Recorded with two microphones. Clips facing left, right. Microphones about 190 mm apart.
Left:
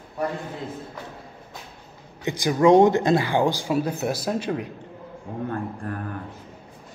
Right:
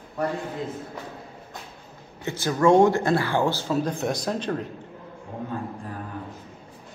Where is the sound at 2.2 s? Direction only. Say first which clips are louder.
Left 2 dB; 15° left (ahead or behind).